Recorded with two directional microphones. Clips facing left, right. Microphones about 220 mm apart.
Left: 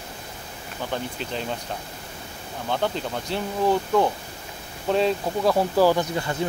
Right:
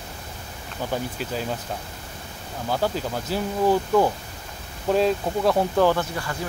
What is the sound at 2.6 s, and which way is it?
Speech, 5° right (ahead or behind).